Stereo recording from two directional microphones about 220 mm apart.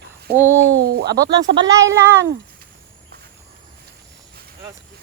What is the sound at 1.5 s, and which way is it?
Speech, 10° right (ahead or behind).